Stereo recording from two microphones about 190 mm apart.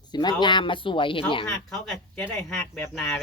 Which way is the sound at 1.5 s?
5° left (ahead or behind).